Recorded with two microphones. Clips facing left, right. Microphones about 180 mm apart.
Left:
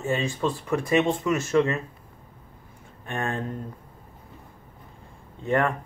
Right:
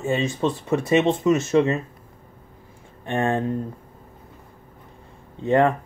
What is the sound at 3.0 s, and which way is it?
Speech, 30° right (ahead or behind).